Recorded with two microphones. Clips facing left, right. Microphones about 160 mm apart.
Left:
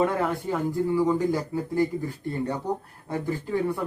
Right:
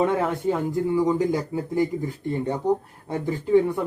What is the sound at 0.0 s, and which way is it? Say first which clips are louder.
Speech: right 3 dB; 20° right (ahead or behind).